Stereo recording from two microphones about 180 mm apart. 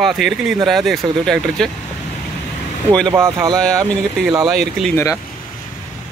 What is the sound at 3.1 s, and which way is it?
Speech, 15° right (ahead or behind).